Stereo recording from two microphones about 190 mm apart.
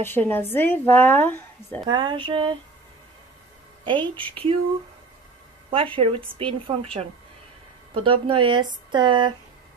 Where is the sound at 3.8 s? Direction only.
25° right (ahead or behind).